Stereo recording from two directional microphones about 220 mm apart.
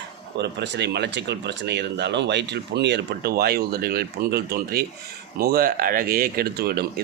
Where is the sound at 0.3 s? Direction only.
50° right (ahead or behind).